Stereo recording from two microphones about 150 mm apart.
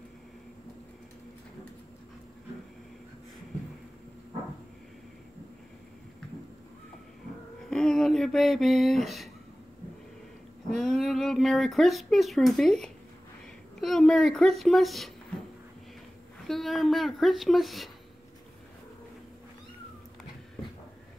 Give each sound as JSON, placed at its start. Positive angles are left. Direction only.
{"t": 7.7, "sound": "music", "side_deg": 5}
{"t": 10.7, "sound": "speech", "side_deg": 0}
{"t": 16.4, "sound": "speech", "side_deg": 0}